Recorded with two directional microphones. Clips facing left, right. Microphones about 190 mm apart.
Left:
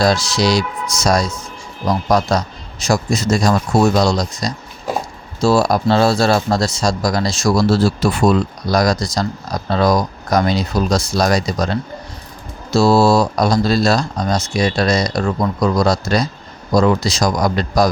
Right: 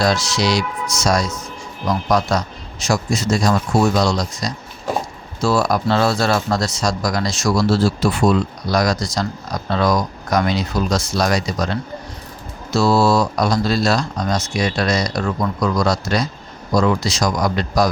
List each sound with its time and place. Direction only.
0.0 s speech: 35° left (ahead or behind)